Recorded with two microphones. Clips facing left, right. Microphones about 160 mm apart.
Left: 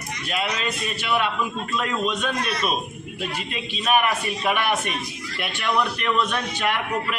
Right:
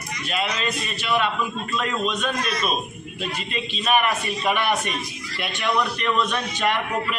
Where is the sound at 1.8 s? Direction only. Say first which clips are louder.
Even; 10° left (ahead or behind).